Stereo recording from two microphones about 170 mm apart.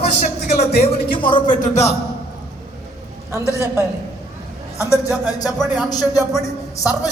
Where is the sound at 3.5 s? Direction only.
15° right (ahead or behind).